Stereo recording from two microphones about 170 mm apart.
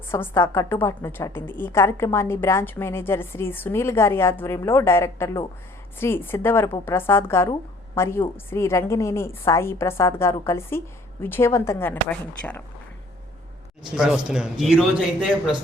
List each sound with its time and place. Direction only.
0.1 s a woman's voice: 15° left (ahead or behind)
13.9 s a man's voice: 5° right (ahead or behind)